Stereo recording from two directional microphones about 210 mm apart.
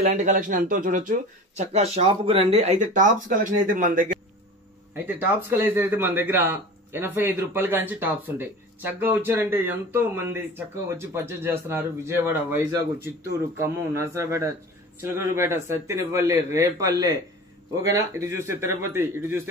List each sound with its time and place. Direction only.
0.0 s speech: 35° right (ahead or behind)
4.9 s a man's voice: 10° right (ahead or behind)